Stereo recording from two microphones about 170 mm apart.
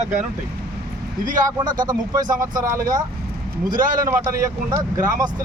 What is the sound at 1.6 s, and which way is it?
Speech, 25° right (ahead or behind).